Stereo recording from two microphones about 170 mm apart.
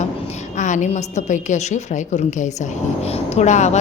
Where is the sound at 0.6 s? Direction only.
45° left (ahead or behind).